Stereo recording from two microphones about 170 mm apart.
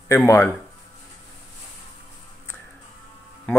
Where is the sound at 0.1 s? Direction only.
15° left (ahead or behind).